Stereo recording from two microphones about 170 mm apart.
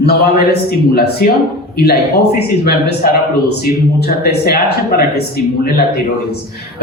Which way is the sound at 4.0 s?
70° left (ahead or behind).